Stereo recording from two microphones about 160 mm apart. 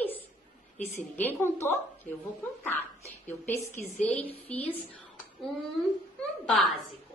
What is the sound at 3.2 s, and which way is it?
A woman's voice, 15° left (ahead or behind).